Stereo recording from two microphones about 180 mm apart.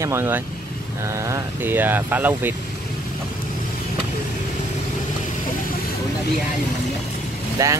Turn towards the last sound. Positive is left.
turn(degrees=-20)  # may be behind; listen again after turning